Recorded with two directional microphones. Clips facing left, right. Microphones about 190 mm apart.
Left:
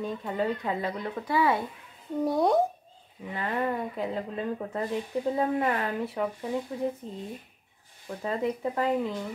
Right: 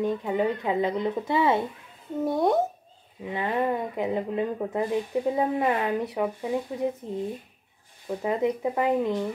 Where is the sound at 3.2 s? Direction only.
15° right (ahead or behind).